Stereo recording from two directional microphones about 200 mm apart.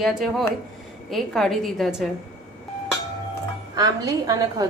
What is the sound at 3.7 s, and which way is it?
Speech, 20° right (ahead or behind).